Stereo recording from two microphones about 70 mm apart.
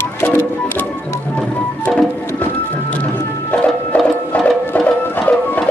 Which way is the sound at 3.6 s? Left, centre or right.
Centre.